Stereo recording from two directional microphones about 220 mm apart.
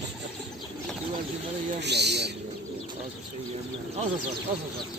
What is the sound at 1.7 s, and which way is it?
Speech, 50° right (ahead or behind).